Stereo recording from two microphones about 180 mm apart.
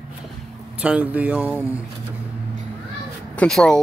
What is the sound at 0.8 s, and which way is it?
Speech, 10° right (ahead or behind).